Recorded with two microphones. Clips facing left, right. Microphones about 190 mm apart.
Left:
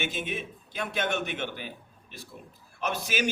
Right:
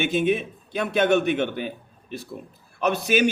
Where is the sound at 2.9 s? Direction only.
65° right (ahead or behind).